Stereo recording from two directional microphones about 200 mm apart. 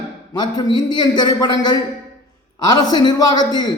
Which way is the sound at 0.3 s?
20° left (ahead or behind).